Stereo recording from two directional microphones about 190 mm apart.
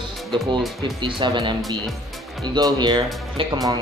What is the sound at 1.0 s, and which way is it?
Speech, 25° right (ahead or behind).